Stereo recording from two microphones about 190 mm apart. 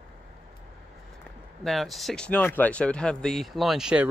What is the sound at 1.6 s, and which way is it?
Speech, centre (ahead or behind).